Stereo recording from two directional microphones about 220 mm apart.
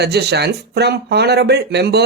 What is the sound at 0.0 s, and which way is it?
Speech, 50° right (ahead or behind).